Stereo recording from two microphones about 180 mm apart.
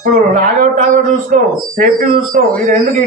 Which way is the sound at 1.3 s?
50° right (ahead or behind).